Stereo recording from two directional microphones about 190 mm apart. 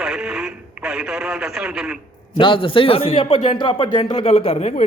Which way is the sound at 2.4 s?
25° left (ahead or behind).